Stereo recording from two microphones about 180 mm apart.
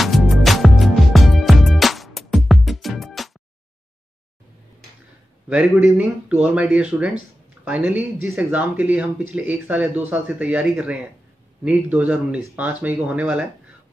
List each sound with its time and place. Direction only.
0.0 s music: centre (ahead or behind)
5.5 s speech: 5° right (ahead or behind)